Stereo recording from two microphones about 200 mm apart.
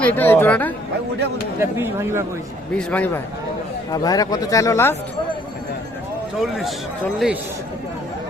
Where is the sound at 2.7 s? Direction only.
5° left (ahead or behind).